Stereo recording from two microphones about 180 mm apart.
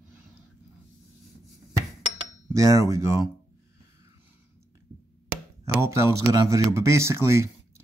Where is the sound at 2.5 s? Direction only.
20° right (ahead or behind).